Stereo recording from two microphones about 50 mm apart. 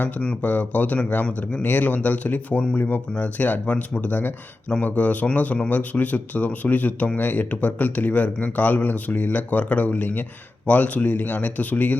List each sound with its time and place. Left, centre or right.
0.4 s a man's voice: left